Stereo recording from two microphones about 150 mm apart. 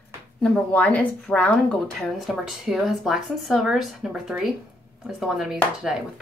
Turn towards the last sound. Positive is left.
turn(degrees=0)  # may be behind; listen again after turning